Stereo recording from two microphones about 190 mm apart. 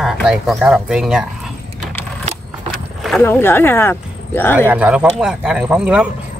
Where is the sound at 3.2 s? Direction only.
10° left (ahead or behind).